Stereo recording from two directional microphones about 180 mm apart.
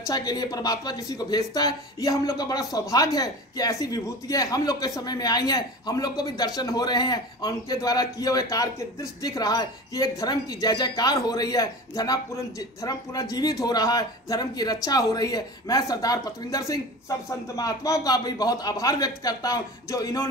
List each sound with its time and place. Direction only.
0.0 s speech: 20° left (ahead or behind)